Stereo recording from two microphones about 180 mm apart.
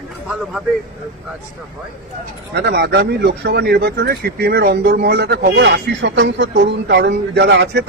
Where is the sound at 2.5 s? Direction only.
65° right (ahead or behind).